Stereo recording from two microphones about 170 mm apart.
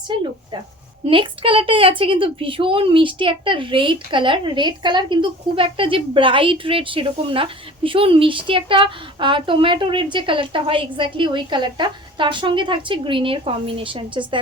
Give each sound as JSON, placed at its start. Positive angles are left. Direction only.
{"t": 0.1, "sound": "a woman's voice", "side_deg": -25}